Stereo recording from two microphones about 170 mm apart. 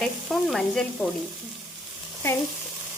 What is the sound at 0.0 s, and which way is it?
Sizzle, centre (ahead or behind).